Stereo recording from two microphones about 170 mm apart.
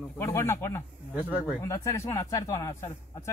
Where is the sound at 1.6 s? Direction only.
15° left (ahead or behind).